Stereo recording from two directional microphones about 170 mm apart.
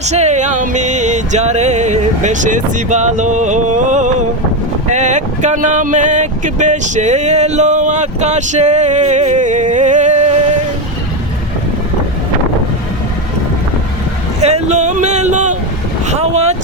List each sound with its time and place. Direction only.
0.0 s music: 40° right (ahead or behind)
4.9 s speech: 45° right (ahead or behind)
14.4 s speech: 40° right (ahead or behind)